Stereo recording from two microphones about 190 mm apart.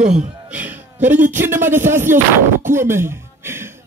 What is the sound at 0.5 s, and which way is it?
Speech, 10° right (ahead or behind).